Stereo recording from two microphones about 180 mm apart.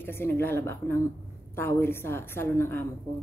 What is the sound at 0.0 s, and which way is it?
A woman's voice, 15° left (ahead or behind).